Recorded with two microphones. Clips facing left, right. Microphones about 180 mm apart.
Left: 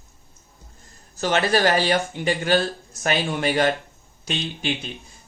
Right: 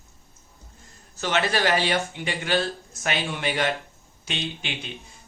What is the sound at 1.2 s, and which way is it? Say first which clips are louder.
Speech: left 4 dB; 40° left (ahead or behind).